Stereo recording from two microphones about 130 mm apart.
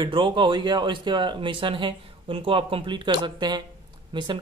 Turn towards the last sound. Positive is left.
turn(degrees=-35)  # may be behind; listen again after turning